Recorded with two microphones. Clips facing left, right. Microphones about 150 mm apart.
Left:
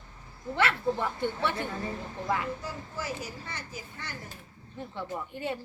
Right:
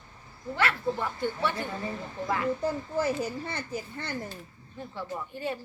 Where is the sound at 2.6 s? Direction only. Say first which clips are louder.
Right 9 dB; 50° right (ahead or behind).